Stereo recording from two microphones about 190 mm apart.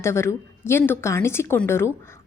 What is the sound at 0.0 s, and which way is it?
A woman's voice, 15° left (ahead or behind).